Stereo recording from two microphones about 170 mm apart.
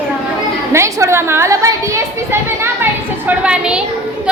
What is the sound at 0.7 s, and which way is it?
A child's voice, 15° right (ahead or behind).